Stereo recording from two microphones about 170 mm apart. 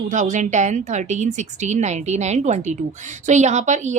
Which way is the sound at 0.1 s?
45° right (ahead or behind).